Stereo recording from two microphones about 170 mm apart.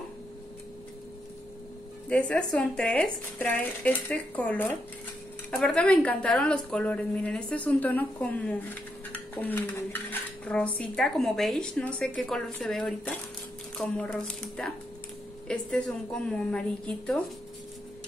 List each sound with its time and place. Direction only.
2.0 s a woman's voice: 5° left (ahead or behind)